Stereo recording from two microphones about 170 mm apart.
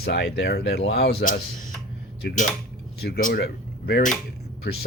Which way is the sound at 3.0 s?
70° left (ahead or behind).